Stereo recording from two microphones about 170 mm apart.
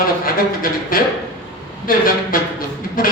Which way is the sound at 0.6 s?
60° left (ahead or behind).